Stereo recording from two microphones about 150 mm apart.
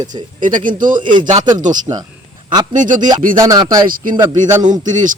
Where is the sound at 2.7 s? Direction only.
60° right (ahead or behind).